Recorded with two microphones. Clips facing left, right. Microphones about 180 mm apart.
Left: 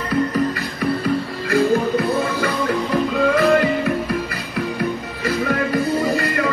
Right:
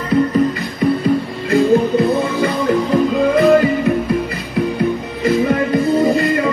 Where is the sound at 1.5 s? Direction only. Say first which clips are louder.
Right 4 dB; 20° right (ahead or behind).